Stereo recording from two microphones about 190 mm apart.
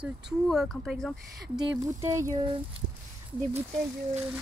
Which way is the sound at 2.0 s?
15° right (ahead or behind).